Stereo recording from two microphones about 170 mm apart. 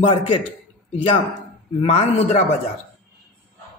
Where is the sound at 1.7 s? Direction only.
35° left (ahead or behind).